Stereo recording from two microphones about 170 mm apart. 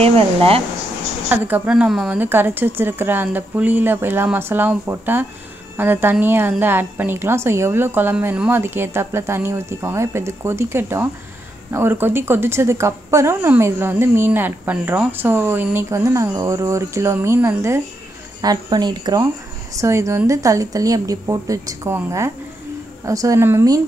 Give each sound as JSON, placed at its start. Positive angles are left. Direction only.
{"t": 0.0, "sound": "speech", "side_deg": -35}
{"t": 1.3, "sound": "a woman's voice", "side_deg": -10}